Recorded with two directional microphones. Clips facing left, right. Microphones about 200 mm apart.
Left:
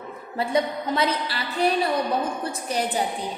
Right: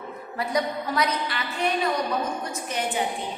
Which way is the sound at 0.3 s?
25° left (ahead or behind).